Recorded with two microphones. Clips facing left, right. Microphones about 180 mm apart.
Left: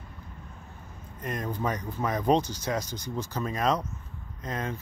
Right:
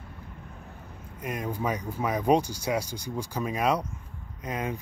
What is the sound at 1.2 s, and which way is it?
Speech, 10° right (ahead or behind).